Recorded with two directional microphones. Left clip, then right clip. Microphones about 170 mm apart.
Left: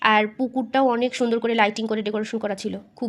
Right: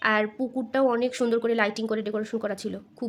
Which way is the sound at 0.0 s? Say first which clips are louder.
Left 5 dB; 15° left (ahead or behind).